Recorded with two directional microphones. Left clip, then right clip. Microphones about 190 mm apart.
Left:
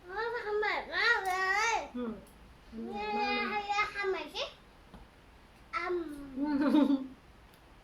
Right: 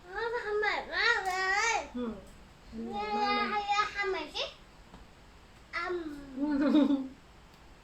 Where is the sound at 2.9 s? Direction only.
5° left (ahead or behind).